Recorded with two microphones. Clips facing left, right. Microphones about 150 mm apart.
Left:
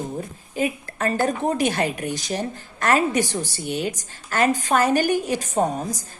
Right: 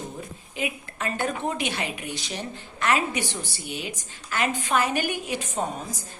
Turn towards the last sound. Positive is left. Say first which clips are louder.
# left 7 dB
turn(degrees=40)  # may be behind; listen again after turning